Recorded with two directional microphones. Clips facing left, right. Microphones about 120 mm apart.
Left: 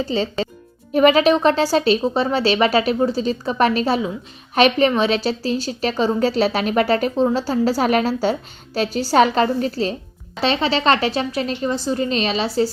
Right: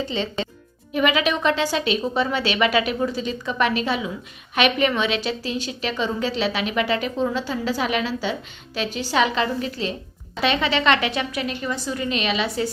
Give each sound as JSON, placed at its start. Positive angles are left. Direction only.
{"t": 0.0, "sound": "speech", "side_deg": 35}